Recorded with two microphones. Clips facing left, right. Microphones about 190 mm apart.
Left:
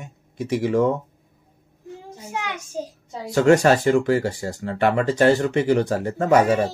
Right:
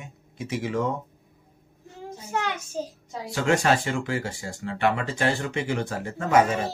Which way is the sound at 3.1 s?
40° left (ahead or behind).